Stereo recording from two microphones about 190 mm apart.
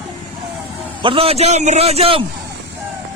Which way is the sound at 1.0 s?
30° right (ahead or behind).